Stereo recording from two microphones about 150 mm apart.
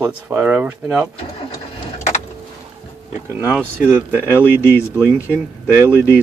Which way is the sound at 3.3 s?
15° right (ahead or behind).